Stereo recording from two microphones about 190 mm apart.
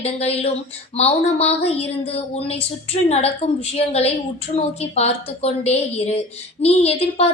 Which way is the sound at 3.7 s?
35° left (ahead or behind).